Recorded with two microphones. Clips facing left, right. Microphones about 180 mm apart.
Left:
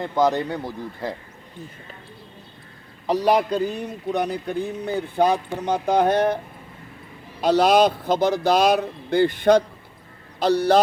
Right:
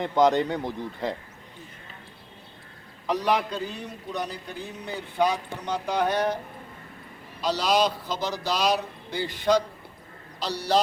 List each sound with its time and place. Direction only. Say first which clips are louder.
0.2 s speech: even; 15° right (ahead or behind)
3.1 s speech: left 6 dB; 35° left (ahead or behind); by 6.4 s 55° left (ahead or behind)
7.4 s speech: left 7 dB; 55° left (ahead or behind)